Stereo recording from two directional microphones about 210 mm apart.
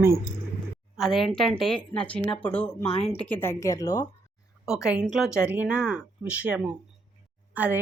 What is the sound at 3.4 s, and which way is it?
Speech, 15° left (ahead or behind).